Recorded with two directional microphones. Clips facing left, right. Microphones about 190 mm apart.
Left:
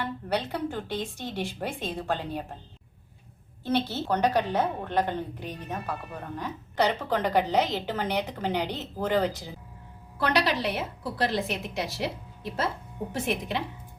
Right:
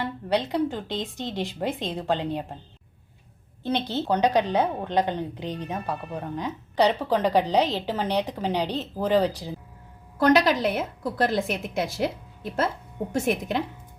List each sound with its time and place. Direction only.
0.5 s a woman's voice: 15° right (ahead or behind)
3.6 s a woman's voice: 15° right (ahead or behind)
10.2 s a woman's voice: 45° right (ahead or behind)